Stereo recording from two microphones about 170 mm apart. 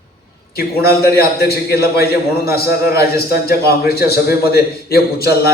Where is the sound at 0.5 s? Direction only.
65° left (ahead or behind).